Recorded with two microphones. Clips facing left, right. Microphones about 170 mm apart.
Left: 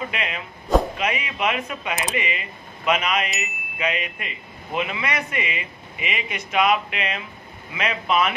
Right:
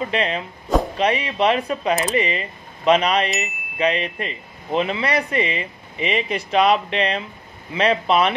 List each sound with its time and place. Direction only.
0.1 s speech: 35° right (ahead or behind)